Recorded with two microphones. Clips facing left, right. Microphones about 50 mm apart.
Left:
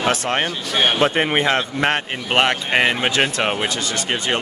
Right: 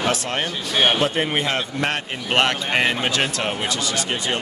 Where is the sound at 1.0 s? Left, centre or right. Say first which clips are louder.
Left 4 dB; left.